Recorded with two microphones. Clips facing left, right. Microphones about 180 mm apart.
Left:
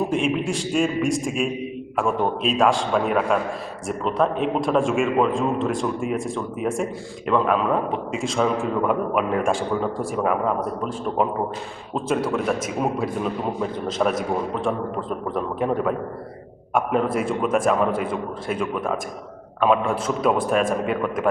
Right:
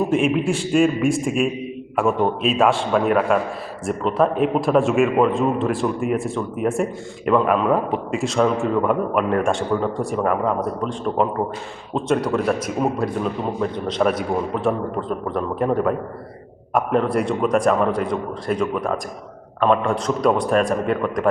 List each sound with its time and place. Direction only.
0.1 s a man's voice: 5° right (ahead or behind)